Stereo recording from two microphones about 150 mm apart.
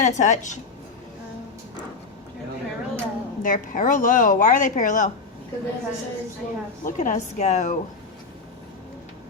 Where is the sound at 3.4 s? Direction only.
65° left (ahead or behind).